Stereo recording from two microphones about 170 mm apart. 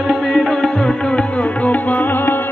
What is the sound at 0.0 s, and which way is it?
Music, centre (ahead or behind).